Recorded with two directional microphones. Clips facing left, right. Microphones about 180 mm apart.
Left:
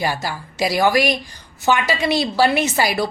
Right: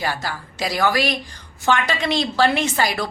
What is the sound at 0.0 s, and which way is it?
A woman's voice, 15° left (ahead or behind).